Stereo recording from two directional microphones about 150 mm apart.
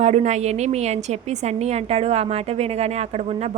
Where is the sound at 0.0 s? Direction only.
50° right (ahead or behind).